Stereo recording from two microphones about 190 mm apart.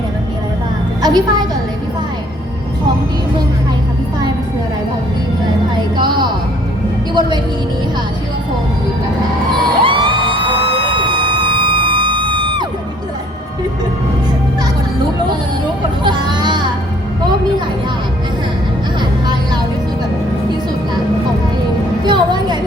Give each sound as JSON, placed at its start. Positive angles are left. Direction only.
{"t": 1.0, "sound": "a woman's voice", "side_deg": -20}
{"t": 5.7, "sound": "music", "side_deg": -25}
{"t": 7.1, "sound": "a woman's voice", "side_deg": -25}
{"t": 9.8, "sound": "music", "side_deg": -25}
{"t": 11.5, "sound": "siren", "side_deg": -25}
{"t": 12.1, "sound": "music", "side_deg": -25}
{"t": 16.0, "sound": "a sound", "side_deg": -20}
{"t": 22.0, "sound": "music", "side_deg": -20}